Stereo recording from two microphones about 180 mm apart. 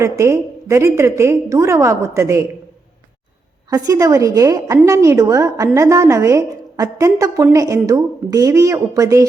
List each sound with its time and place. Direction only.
0.0 s a woman's voice: 15° right (ahead or behind)
3.7 s a woman's voice: 20° right (ahead or behind)